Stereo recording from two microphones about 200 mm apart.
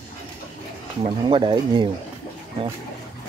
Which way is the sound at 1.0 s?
25° right (ahead or behind).